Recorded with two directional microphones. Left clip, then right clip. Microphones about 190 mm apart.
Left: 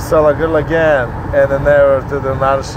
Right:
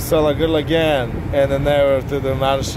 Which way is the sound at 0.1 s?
30° right (ahead or behind).